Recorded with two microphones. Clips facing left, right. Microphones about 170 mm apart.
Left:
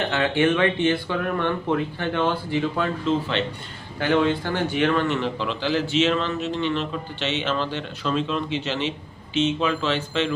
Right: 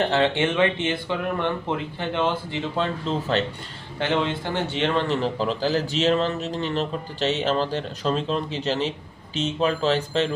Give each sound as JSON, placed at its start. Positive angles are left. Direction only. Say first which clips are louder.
{"t": 0.1, "sound": "a man's voice", "louder": "left 1 dB", "side_deg": -25}